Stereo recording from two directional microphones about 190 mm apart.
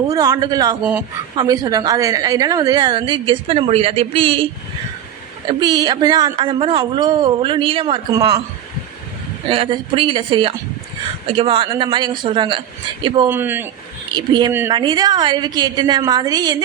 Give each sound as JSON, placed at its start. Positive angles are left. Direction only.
{"t": 0.1, "sound": "a woman's voice", "side_deg": -20}
{"t": 5.5, "sound": "a woman's voice", "side_deg": -25}
{"t": 9.5, "sound": "a woman's voice", "side_deg": -25}
{"t": 13.2, "sound": "a man's voice", "side_deg": -10}
{"t": 14.1, "sound": "a woman's voice", "side_deg": -20}